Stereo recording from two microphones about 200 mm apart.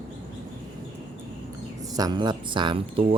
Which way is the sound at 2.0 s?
20° right (ahead or behind).